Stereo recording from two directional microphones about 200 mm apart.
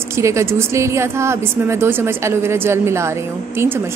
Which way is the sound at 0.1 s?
15° right (ahead or behind).